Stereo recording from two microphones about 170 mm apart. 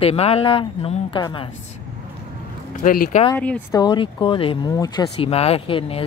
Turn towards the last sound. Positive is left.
turn(degrees=35)  # may be behind; listen again after turning